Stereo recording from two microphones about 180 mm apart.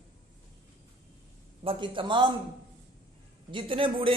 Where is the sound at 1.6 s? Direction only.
30° right (ahead or behind).